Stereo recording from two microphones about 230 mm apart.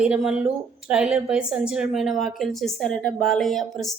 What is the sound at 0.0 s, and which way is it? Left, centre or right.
A woman's voice, centre.